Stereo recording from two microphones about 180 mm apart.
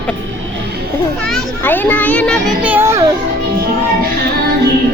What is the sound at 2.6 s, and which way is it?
Children playing, 10° right (ahead or behind).